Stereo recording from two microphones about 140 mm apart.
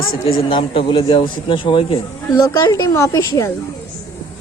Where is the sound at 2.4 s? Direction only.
25° left (ahead or behind).